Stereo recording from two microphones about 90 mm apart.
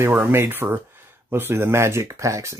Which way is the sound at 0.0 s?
25° right (ahead or behind).